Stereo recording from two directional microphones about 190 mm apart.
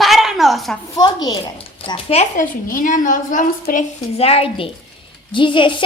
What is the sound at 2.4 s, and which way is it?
A woman's voice, 45° left (ahead or behind).